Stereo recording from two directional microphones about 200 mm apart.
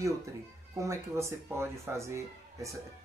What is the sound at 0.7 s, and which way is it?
Speech, 15° right (ahead or behind).